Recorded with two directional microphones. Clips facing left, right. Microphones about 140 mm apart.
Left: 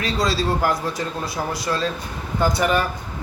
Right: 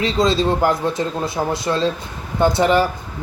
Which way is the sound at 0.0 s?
20° right (ahead or behind).